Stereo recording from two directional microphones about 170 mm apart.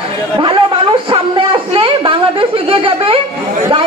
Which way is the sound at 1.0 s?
30° right (ahead or behind).